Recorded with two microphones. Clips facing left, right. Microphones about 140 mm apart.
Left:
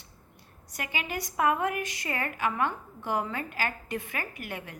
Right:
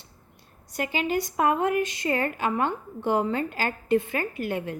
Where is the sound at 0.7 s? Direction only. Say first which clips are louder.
Right 8 dB; 30° right (ahead or behind).